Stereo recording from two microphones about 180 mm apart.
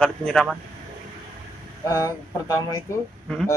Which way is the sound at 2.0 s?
20° left (ahead or behind).